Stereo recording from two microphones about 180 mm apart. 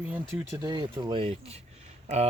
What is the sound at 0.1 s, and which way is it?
Speech, 15° right (ahead or behind).